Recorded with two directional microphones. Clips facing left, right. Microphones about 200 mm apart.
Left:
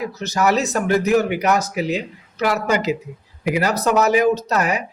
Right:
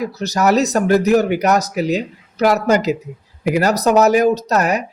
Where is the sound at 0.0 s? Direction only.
40° right (ahead or behind).